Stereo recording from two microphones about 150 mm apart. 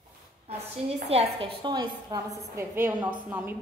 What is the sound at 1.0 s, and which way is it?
A woman's voice, 40° right (ahead or behind).